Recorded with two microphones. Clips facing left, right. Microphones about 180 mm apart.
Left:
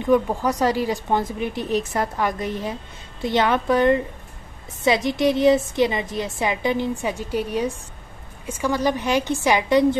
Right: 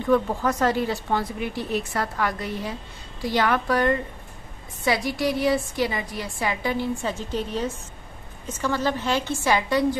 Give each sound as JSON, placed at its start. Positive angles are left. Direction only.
{"t": 0.0, "sound": "a woman's voice", "side_deg": 15}